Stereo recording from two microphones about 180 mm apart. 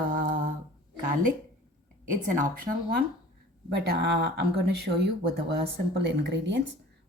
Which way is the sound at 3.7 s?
65° right (ahead or behind).